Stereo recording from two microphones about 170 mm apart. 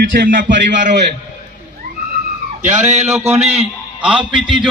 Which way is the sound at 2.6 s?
40° right (ahead or behind).